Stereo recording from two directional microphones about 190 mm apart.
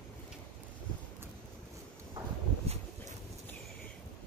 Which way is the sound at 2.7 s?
35° right (ahead or behind).